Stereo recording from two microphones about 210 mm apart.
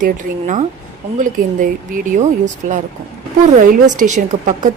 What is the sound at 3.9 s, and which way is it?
Speech, 35° right (ahead or behind).